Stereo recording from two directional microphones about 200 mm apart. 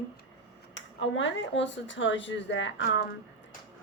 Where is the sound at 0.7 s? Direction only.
65° left (ahead or behind).